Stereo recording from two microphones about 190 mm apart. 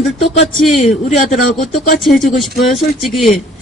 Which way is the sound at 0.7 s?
40° left (ahead or behind).